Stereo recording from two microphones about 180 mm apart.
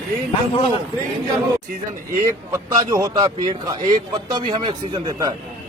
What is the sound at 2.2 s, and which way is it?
A man's voice, 20° right (ahead or behind).